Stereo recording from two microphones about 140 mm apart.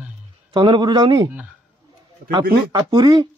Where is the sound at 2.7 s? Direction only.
35° right (ahead or behind).